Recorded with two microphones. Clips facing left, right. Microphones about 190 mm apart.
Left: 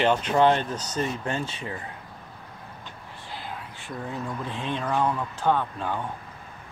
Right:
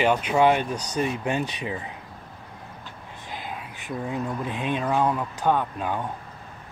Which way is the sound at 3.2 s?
15° right (ahead or behind).